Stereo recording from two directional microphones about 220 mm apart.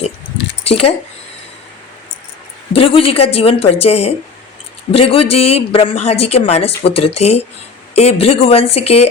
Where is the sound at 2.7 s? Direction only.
25° left (ahead or behind).